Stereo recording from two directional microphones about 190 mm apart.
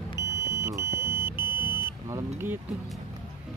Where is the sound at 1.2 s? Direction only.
25° left (ahead or behind).